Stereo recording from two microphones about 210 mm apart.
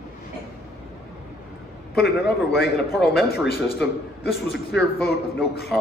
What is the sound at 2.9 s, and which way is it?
A man's voice, centre (ahead or behind).